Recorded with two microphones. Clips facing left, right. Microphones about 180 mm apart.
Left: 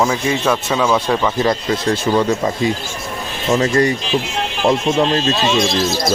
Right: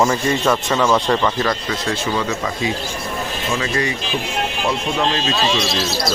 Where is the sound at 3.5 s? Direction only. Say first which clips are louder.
Left 8 dB; 45° left (ahead or behind).